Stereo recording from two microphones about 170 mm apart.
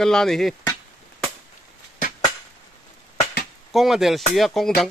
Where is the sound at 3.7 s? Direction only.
Centre (ahead or behind).